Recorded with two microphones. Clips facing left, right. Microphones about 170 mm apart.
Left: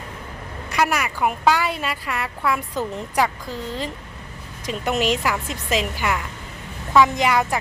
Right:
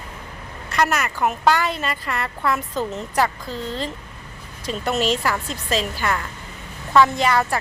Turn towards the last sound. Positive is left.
turn(degrees=15)  # may be behind; listen again after turning